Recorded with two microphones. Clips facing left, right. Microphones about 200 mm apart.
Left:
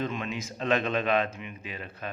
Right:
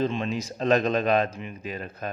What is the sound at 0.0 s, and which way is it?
A man's voice, 30° right (ahead or behind).